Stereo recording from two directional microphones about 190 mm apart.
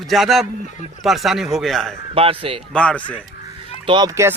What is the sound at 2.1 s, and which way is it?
Speech, 30° right (ahead or behind).